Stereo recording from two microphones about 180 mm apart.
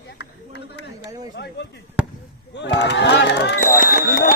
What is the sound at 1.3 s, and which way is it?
Chop, 70° left (ahead or behind).